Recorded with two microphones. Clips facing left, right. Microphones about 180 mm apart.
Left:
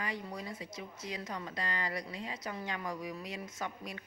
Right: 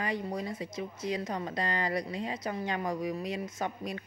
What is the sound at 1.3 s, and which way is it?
Speech, 40° right (ahead or behind).